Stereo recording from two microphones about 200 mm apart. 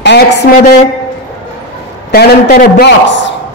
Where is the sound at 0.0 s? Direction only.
60° left (ahead or behind).